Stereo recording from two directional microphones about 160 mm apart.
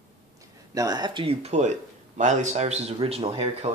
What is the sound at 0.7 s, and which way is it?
Speech, 25° right (ahead or behind).